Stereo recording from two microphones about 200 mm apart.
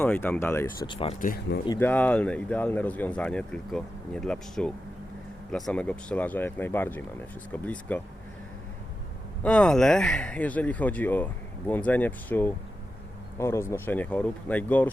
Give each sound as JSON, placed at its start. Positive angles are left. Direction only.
{"t": 0.0, "sound": "speech", "side_deg": 5}
{"t": 0.9, "sound": "speech", "side_deg": 30}
{"t": 1.6, "sound": "speech", "side_deg": 15}
{"t": 9.4, "sound": "speech", "side_deg": 5}